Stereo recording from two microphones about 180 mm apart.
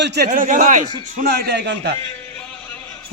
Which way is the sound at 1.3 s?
60° right (ahead or behind).